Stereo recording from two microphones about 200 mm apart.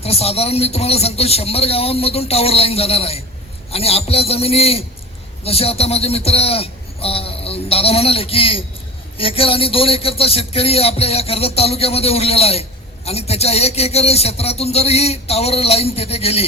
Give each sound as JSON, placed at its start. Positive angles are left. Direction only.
{"t": 0.0, "sound": "speech", "side_deg": 30}